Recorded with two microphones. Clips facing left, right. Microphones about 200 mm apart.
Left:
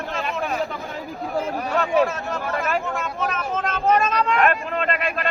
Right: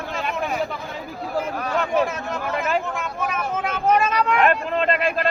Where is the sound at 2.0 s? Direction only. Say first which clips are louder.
Left 1 dB; 20° right (ahead or behind).